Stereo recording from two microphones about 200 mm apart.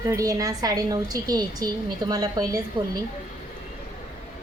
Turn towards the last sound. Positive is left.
turn(degrees=-20)  # may be behind; listen again after turning